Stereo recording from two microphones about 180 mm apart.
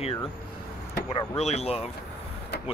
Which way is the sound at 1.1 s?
35° left (ahead or behind).